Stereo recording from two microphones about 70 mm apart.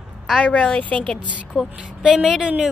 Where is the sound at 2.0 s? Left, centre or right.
Centre.